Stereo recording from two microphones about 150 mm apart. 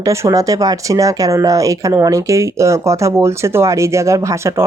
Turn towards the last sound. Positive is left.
turn(degrees=-20)  # may be behind; listen again after turning